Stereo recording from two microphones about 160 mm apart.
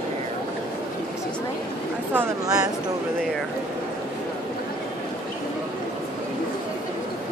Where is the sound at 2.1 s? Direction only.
20° right (ahead or behind).